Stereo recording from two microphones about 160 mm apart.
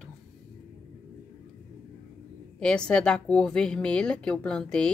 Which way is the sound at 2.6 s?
5° left (ahead or behind).